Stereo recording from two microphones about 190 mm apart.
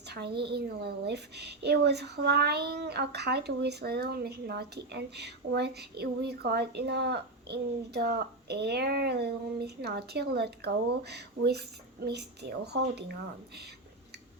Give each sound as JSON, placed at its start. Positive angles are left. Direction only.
{"t": 0.1, "sound": "a woman's voice", "side_deg": -60}